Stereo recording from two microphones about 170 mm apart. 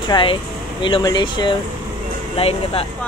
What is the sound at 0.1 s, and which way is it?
Speech, 30° left (ahead or behind).